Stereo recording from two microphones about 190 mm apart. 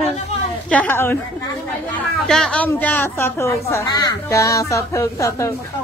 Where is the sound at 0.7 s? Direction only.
10° left (ahead or behind).